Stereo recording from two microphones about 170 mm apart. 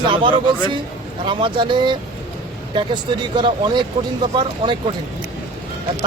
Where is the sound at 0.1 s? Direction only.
30° right (ahead or behind).